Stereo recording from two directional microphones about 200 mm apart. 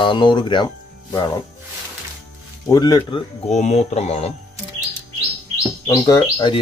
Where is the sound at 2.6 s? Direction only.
20° left (ahead or behind).